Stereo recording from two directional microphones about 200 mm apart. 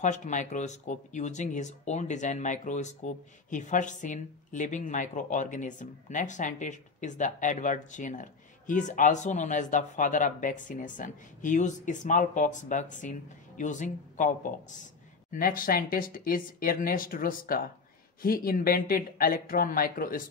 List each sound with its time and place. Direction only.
0.0 s speech: 40° left (ahead or behind)